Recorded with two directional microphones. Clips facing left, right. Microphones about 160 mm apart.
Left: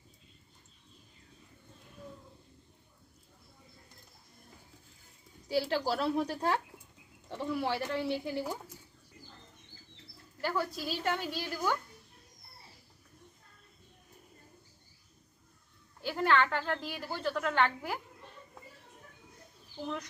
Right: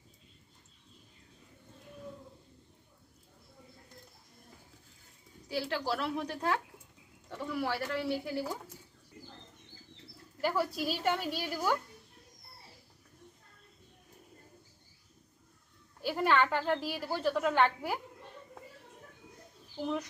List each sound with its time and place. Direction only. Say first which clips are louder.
5.5 s speech: left 3 dB; 35° left (ahead or behind)
10.4 s a woman's voice: right 3 dB; 5° right (ahead or behind)
16.0 s a woman's voice: even; 5° right (ahead or behind)
19.8 s speech: right 4 dB; 10° right (ahead or behind)